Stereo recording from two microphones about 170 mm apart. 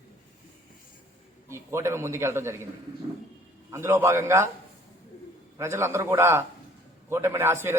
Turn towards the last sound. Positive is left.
turn(degrees=-15)  # may be behind; listen again after turning